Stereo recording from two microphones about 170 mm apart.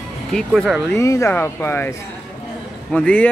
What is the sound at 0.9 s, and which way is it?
Speech, 15° left (ahead or behind).